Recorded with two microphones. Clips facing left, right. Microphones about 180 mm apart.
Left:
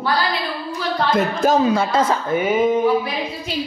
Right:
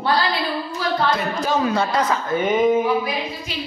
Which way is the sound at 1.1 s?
50° left (ahead or behind).